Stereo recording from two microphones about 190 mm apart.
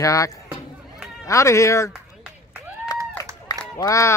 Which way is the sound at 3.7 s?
15° left (ahead or behind).